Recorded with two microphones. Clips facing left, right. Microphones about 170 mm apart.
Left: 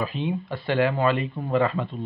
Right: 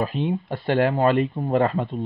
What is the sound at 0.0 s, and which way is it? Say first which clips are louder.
Speech: right 3 dB; 45° right (ahead or behind).